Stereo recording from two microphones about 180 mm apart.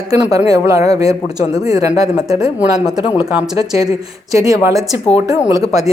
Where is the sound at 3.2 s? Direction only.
5° right (ahead or behind).